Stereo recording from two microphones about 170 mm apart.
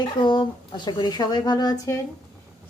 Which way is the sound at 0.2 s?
25° left (ahead or behind).